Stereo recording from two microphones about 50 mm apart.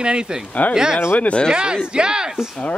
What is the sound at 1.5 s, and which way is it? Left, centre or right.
Speech, centre.